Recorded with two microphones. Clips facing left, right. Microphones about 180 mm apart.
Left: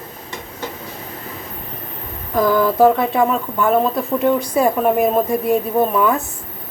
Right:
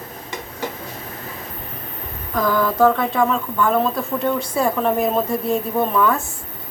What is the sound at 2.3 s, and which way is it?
Speech, 25° left (ahead or behind).